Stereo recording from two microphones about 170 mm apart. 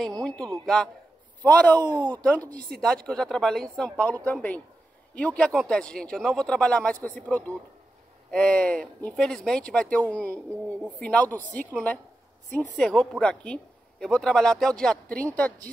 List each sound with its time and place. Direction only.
0.2 s speech: 5° left (ahead or behind)
1.8 s speech: 25° right (ahead or behind)
2.8 s speech: 5° left (ahead or behind)